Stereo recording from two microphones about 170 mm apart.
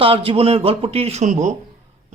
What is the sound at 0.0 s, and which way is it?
Speech, 35° right (ahead or behind).